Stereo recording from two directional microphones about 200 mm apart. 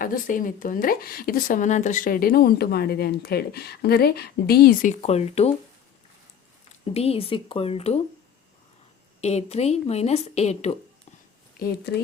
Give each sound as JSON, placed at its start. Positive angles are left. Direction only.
{"t": 0.0, "sound": "a woman's voice", "side_deg": 45}
{"t": 6.8, "sound": "speech", "side_deg": 30}
{"t": 9.2, "sound": "speech", "side_deg": 30}